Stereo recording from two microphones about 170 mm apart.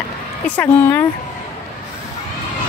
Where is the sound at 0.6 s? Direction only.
10° left (ahead or behind).